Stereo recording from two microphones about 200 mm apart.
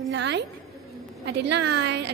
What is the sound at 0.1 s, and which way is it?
A woman's voice, 60° right (ahead or behind).